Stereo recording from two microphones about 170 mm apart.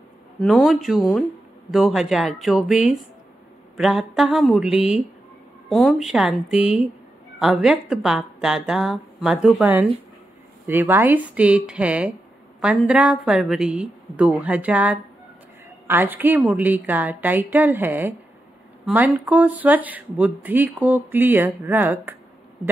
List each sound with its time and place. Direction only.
0.4 s speech: centre (ahead or behind)
6.5 s speech: 35° left (ahead or behind)
7.3 s speech: 5° right (ahead or behind)